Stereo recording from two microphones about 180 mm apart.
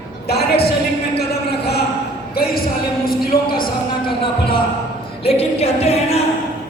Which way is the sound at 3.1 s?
55° left (ahead or behind).